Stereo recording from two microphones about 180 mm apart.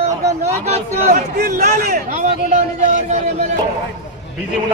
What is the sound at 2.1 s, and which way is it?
A man's voice, 45° right (ahead or behind).